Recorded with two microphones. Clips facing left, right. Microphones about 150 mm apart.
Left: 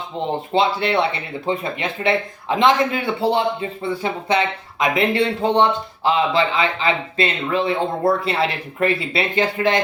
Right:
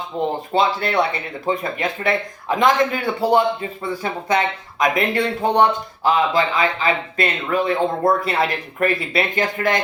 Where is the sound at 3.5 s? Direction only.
25° left (ahead or behind).